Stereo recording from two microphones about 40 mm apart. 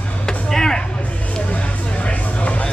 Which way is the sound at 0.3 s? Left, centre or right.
Centre.